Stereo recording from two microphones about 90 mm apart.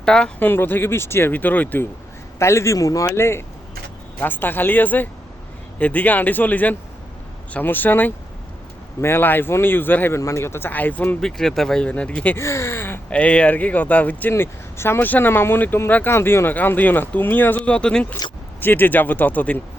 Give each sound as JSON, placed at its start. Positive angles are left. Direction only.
{"t": 0.0, "sound": "speech", "side_deg": 10}
{"t": 0.3, "sound": "speech", "side_deg": 20}
{"t": 2.4, "sound": "a man's voice", "side_deg": 35}
{"t": 11.2, "sound": "speech", "side_deg": 5}
{"t": 12.4, "sound": "a sound", "side_deg": 30}
{"t": 13.1, "sound": "speech", "side_deg": 15}
{"t": 18.6, "sound": "speech", "side_deg": 20}